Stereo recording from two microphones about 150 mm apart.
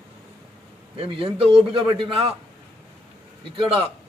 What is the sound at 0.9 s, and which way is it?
A man's voice, 40° right (ahead or behind).